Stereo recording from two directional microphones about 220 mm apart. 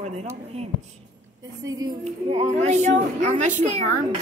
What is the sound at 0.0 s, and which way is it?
Speech, 30° right (ahead or behind).